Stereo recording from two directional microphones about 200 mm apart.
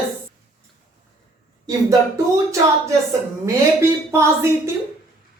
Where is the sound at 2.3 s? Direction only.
15° right (ahead or behind).